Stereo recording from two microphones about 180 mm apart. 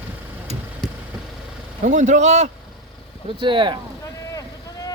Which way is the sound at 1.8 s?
45° right (ahead or behind).